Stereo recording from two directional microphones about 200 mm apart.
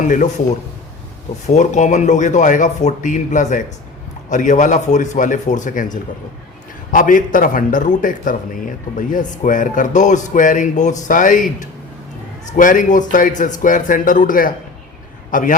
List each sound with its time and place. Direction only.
0.0 s speech: 40° left (ahead or behind)
1.5 s a man's voice: 35° left (ahead or behind)